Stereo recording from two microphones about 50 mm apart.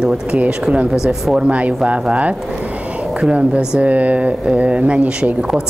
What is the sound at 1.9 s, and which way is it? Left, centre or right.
Speech, right.